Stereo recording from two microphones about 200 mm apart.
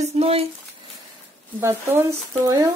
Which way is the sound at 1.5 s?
10° right (ahead or behind).